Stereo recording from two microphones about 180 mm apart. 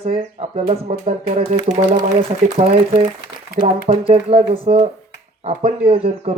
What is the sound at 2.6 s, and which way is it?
Speech, 30° right (ahead or behind).